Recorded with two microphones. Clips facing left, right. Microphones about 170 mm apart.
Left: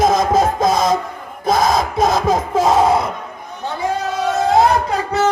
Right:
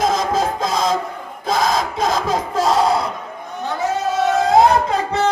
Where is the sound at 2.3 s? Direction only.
50° left (ahead or behind).